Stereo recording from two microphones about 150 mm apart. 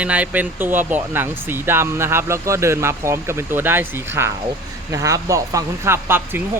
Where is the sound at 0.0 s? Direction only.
10° right (ahead or behind).